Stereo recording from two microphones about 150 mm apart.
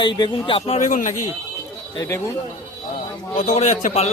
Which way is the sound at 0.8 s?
55° left (ahead or behind).